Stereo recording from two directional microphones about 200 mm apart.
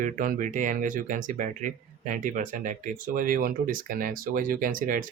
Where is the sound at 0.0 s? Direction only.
40° right (ahead or behind).